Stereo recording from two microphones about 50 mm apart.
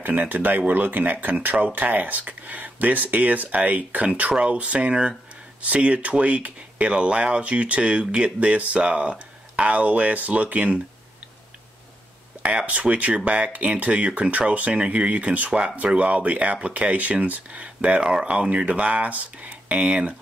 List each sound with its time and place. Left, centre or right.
0.0 s speech: right
12.4 s speech: right